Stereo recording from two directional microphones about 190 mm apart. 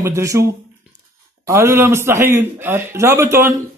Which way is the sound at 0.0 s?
15° right (ahead or behind).